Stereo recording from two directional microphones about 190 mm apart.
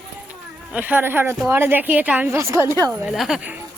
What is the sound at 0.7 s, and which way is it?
Speech, 10° right (ahead or behind).